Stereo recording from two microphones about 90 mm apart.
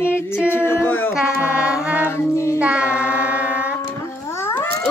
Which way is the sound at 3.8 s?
25° left (ahead or behind).